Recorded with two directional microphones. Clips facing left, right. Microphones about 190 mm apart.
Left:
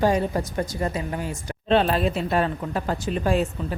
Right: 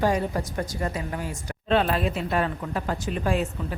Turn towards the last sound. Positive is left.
turn(degrees=30)  # may be behind; listen again after turning